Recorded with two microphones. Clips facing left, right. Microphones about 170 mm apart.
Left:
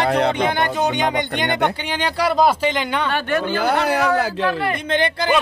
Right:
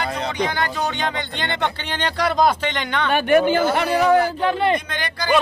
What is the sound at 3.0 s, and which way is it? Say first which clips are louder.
Speech: right 5 dB; 15° right (ahead or behind).